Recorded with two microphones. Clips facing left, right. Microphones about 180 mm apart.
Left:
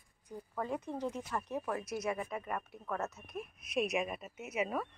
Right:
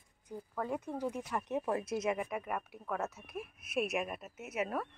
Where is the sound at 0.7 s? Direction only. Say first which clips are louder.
Right 1 dB; 10° right (ahead or behind).